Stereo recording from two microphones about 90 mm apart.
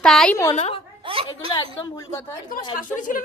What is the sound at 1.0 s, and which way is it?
Speech, 85° right.